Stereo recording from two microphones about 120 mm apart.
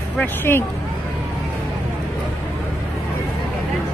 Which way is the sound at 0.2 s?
20° left (ahead or behind).